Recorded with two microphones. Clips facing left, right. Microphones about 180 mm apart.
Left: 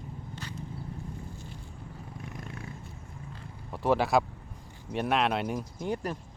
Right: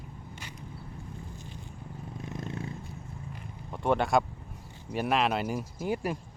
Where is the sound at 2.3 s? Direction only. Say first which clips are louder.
Right 7 dB; 25° right (ahead or behind).